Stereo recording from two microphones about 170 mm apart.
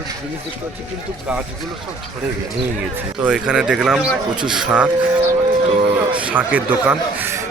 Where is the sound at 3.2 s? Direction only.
5° right (ahead or behind).